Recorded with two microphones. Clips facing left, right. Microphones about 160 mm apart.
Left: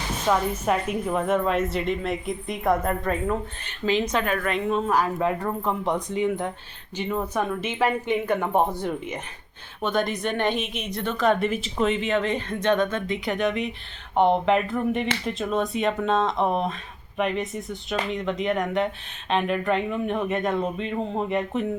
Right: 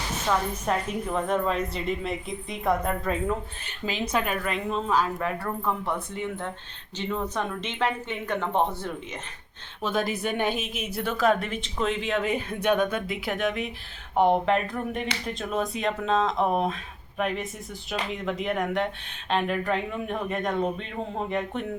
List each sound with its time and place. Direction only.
0.3 s a woman's voice: 10° left (ahead or behind)
3.8 s a woman's voice: 10° right (ahead or behind)
4.9 s speech: 10° left (ahead or behind)
9.8 s a woman's voice: 5° right (ahead or behind)